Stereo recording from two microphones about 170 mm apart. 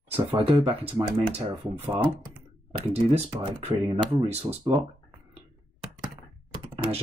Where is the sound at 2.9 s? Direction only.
35° right (ahead or behind).